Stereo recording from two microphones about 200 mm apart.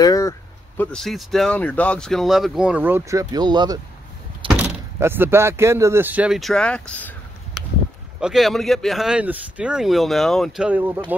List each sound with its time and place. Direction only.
0.0 s a sound: 15° left (ahead or behind)
0.7 s speech: centre (ahead or behind); by 3.8 s 20° right (ahead or behind)
4.5 s speech: 10° right (ahead or behind); by 7.2 s 5° left (ahead or behind)
8.2 s speech: centre (ahead or behind)